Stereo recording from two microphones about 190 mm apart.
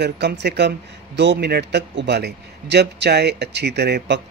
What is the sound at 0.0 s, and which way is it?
A man's voice, 60° right (ahead or behind).